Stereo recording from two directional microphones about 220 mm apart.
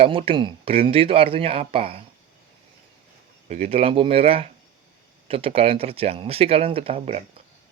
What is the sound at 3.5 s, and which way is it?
Speech, 30° right (ahead or behind).